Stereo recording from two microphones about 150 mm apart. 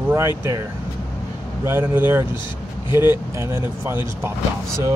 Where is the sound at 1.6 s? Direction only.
15° right (ahead or behind).